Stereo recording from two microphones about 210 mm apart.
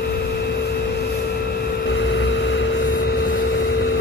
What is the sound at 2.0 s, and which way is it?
Vehicle, 60° left (ahead or behind).